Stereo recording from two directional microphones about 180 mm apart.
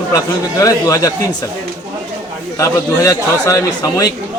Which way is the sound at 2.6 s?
15° left (ahead or behind).